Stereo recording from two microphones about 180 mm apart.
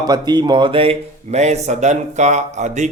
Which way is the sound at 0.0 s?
25° right (ahead or behind).